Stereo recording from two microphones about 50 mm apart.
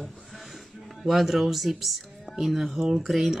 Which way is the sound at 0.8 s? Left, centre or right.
Centre.